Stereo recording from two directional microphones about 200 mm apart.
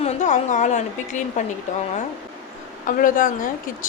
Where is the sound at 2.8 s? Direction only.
40° left (ahead or behind).